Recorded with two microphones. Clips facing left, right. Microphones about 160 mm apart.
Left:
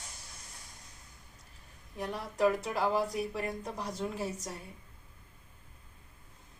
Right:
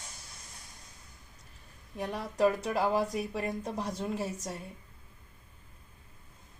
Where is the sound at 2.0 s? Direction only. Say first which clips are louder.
Right 2 dB; 20° right (ahead or behind).